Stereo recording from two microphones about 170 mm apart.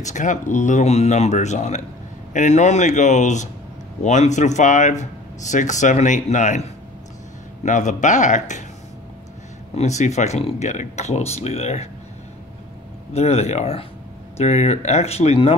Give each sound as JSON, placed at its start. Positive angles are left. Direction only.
{"t": 0.0, "sound": "speech", "side_deg": 45}
{"t": 9.8, "sound": "speech", "side_deg": 40}
{"t": 13.1, "sound": "speech", "side_deg": 40}